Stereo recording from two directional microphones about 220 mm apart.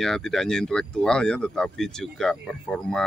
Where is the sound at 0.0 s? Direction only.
Centre (ahead or behind).